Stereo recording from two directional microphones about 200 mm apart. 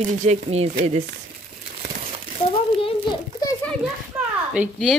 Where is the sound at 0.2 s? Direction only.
35° right (ahead or behind).